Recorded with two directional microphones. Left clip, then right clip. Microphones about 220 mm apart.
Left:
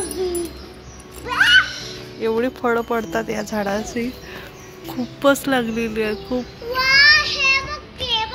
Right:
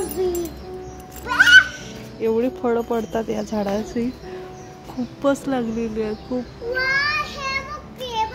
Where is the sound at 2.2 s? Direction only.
5° right (ahead or behind).